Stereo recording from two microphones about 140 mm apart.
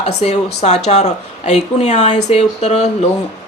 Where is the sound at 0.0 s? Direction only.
55° left (ahead or behind).